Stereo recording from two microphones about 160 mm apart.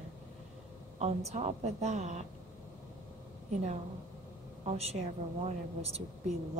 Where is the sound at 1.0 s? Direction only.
40° right (ahead or behind).